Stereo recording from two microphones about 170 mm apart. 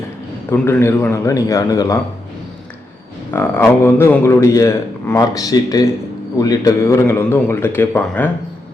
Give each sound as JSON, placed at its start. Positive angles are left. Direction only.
{"t": 0.5, "sound": "a man's voice", "side_deg": 15}
{"t": 3.3, "sound": "a man's voice", "side_deg": 15}